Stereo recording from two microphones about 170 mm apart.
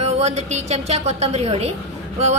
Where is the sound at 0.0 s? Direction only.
40° right (ahead or behind).